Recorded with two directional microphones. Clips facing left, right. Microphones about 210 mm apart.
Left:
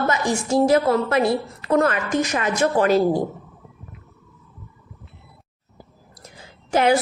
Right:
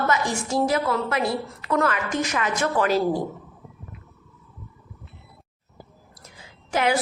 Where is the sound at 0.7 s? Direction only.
40° left (ahead or behind).